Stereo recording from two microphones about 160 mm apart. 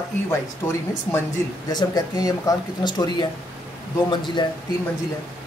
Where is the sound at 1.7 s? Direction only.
25° left (ahead or behind).